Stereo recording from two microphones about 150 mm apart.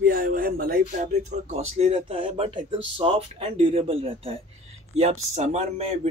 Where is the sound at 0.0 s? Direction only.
75° right (ahead or behind).